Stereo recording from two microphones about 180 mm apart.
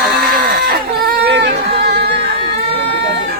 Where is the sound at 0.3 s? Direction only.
55° right (ahead or behind); by 1.5 s 70° right (ahead or behind).